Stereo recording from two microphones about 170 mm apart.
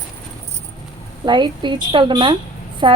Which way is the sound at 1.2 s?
25° right (ahead or behind).